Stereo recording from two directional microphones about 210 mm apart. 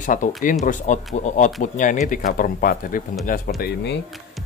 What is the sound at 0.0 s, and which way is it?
Speech, 40° left (ahead or behind).